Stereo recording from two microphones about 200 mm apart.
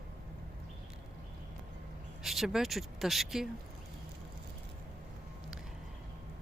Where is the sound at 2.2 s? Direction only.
Centre (ahead or behind).